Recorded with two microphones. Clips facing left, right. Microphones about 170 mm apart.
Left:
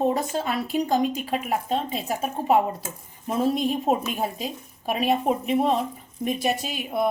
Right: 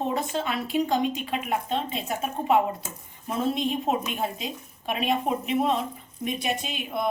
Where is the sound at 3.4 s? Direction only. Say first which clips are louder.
Left 3 dB; 5° left (ahead or behind).